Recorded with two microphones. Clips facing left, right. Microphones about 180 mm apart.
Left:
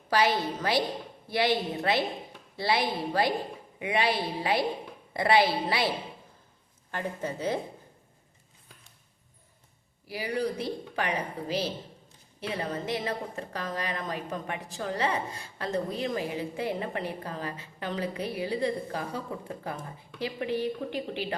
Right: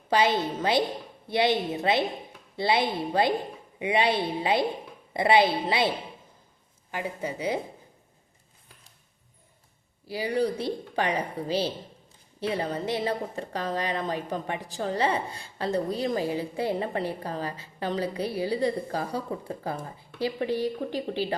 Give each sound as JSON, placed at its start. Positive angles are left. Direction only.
{"t": 0.1, "sound": "a woman's voice", "side_deg": -20}
{"t": 6.9, "sound": "a woman's voice", "side_deg": -10}
{"t": 10.1, "sound": "a woman's voice", "side_deg": -30}